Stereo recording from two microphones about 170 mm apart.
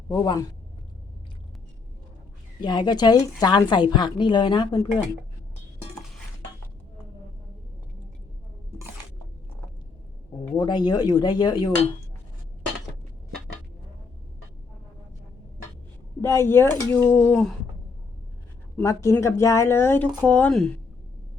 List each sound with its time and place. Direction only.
0.1 s speech: 20° left (ahead or behind)
2.6 s speech: 25° left (ahead or behind)
10.5 s speech: 25° left (ahead or behind)
16.2 s speech: 15° left (ahead or behind)
18.8 s speech: 15° left (ahead or behind)